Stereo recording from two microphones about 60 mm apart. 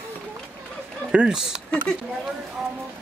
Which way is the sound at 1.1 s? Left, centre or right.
Centre.